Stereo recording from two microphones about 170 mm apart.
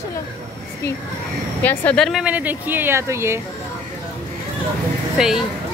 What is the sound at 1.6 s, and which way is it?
Speech, 10° left (ahead or behind).